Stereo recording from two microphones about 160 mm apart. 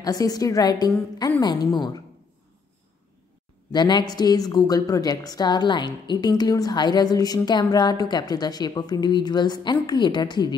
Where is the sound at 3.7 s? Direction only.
25° left (ahead or behind).